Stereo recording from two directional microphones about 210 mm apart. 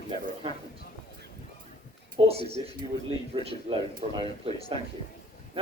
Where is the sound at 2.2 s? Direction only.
30° right (ahead or behind).